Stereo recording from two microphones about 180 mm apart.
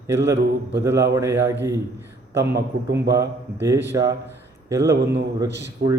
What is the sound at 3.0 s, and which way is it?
A man's voice, 20° right (ahead or behind).